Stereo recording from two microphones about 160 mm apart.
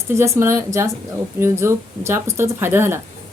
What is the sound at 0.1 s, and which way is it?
Speech, 15° right (ahead or behind).